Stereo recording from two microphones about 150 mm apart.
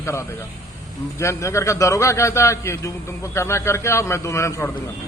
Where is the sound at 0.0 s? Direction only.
20° left (ahead or behind).